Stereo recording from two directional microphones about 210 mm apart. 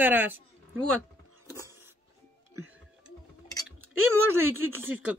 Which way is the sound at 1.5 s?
10° right (ahead or behind).